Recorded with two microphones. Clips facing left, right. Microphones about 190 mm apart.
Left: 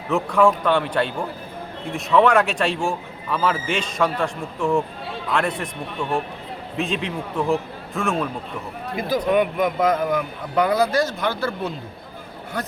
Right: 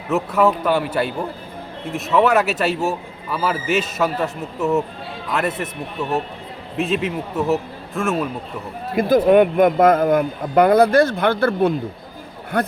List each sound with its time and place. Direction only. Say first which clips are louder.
0.1 s a man's voice: even; 5° right (ahead or behind)
9.0 s speech: right 7 dB; 55° right (ahead or behind)